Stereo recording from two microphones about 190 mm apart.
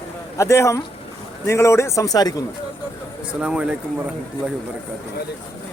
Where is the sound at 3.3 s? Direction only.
5° right (ahead or behind).